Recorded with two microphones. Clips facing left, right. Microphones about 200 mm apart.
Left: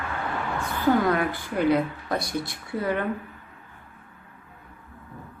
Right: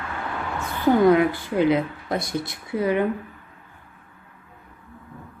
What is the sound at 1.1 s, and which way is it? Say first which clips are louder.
A woman's voice: right 7 dB; 20° right (ahead or behind).